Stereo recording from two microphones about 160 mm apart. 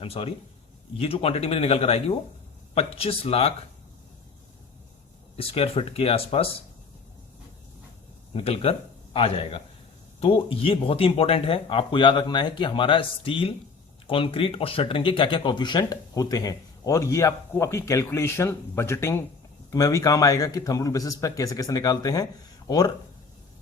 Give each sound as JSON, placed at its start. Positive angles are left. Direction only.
{"t": 0.0, "sound": "speech", "side_deg": 35}
{"t": 5.4, "sound": "speech", "side_deg": 35}
{"t": 8.3, "sound": "speech", "side_deg": 35}